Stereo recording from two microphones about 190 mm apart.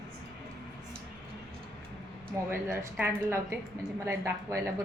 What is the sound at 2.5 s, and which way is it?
A woman's voice, 10° right (ahead or behind).